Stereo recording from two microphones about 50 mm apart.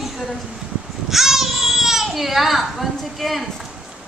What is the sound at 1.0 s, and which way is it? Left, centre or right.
Baby cry, centre.